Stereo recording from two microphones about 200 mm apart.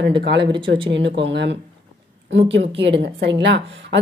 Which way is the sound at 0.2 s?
60° right (ahead or behind).